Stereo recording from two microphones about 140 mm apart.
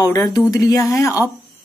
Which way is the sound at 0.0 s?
30° left (ahead or behind).